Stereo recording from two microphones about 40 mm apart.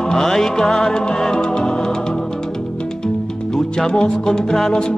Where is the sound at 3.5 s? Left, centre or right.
Centre.